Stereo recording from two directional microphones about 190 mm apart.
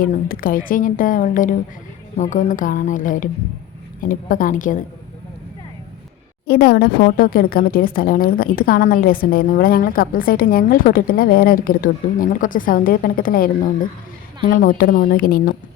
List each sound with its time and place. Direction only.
0.0 s a woman's voice: 50° left (ahead or behind)
6.5 s a woman's voice: 55° left (ahead or behind)